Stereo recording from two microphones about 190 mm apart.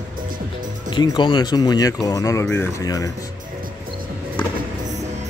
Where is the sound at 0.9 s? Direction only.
25° left (ahead or behind).